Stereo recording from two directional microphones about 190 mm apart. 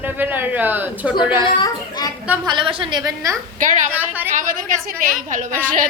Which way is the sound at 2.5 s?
25° right (ahead or behind).